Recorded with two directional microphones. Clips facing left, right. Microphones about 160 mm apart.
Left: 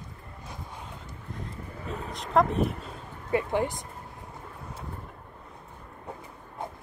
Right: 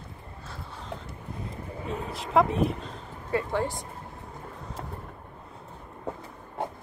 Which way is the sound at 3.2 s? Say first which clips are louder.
Left 1 dB; 20° left (ahead or behind).